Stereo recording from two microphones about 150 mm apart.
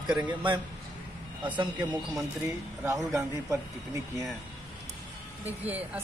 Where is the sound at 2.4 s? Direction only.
20° right (ahead or behind).